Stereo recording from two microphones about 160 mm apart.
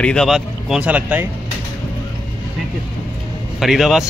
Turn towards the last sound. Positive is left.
turn(degrees=0)  # may be behind; listen again after turning